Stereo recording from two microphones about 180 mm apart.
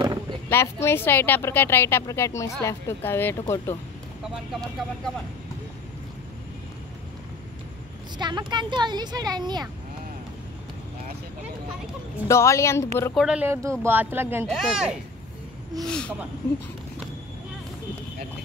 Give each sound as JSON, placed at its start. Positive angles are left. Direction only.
{"t": 0.0, "sound": "a sound", "side_deg": -25}
{"t": 0.5, "sound": "speech", "side_deg": 15}
{"t": 8.2, "sound": "a woman's voice", "side_deg": -25}
{"t": 12.3, "sound": "speech", "side_deg": 15}
{"t": 13.1, "sound": "speech", "side_deg": -5}
{"t": 14.5, "sound": "speech", "side_deg": 0}